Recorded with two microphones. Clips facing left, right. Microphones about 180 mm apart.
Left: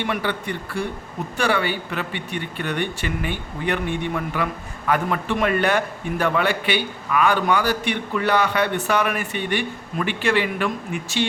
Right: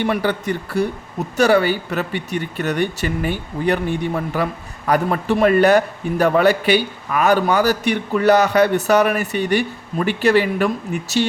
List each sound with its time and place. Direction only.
0.0 s a man's voice: 40° right (ahead or behind)